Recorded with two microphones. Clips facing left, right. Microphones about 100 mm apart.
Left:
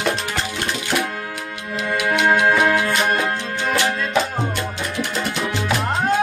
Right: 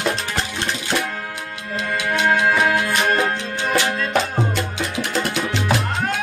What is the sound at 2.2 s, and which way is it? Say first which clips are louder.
Music: left 1 dB; 25° left (ahead or behind).